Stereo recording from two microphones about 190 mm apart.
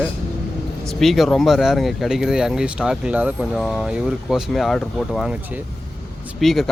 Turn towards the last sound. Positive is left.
turn(degrees=0)  # may be behind; listen again after turning